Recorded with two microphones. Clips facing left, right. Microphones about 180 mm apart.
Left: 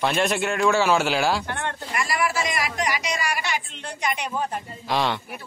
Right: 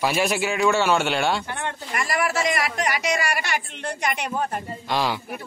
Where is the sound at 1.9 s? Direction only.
45° right (ahead or behind).